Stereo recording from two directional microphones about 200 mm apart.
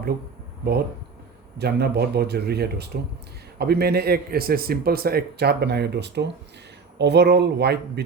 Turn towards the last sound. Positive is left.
turn(degrees=-55)  # may be behind; listen again after turning